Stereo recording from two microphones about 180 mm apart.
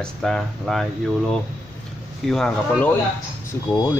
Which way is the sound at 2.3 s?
5° left (ahead or behind).